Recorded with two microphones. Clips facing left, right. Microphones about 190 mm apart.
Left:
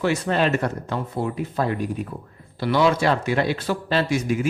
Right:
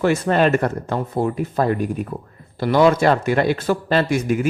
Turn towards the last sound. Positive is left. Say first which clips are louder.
# right 3 dB
turn(degrees=-55)  # may be behind; listen again after turning